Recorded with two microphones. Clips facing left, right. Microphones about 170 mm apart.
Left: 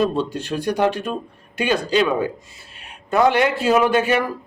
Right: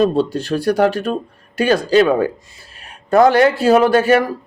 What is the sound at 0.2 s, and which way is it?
A man's voice, 40° right (ahead or behind).